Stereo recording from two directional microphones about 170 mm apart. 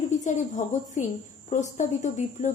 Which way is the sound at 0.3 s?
45° left (ahead or behind).